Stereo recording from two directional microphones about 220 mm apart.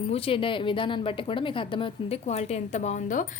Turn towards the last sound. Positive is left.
turn(degrees=35)  # may be behind; listen again after turning